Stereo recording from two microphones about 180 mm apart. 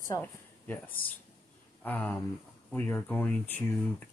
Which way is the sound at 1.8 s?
10° left (ahead or behind).